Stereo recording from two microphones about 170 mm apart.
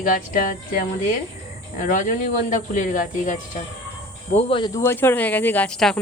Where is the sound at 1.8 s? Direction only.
45° left (ahead or behind).